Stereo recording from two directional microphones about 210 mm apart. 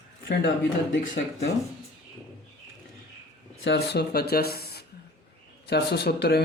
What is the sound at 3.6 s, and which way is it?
Speech, 55° left (ahead or behind).